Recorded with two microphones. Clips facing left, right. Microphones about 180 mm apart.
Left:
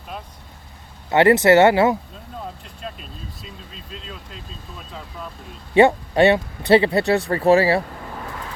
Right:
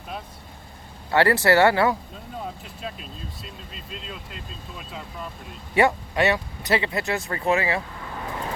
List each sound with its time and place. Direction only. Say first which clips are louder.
1.1 s speech: left 5 dB; 20° left (ahead or behind)
2.8 s speech: left 1 dB; centre (ahead or behind)
5.7 s speech: left 6 dB; 30° left (ahead or behind)